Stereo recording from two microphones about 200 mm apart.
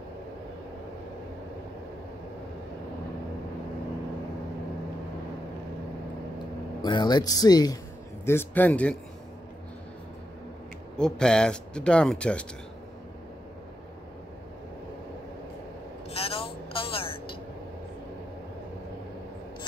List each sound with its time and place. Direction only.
6.8 s a man's voice: 20° left (ahead or behind)
11.0 s speech: 5° left (ahead or behind)
16.1 s vehicle: 30° left (ahead or behind)